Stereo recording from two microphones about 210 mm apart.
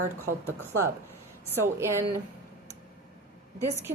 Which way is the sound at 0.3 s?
10° right (ahead or behind).